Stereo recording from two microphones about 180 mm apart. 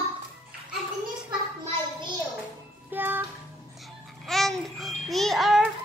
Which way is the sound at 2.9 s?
10° right (ahead or behind).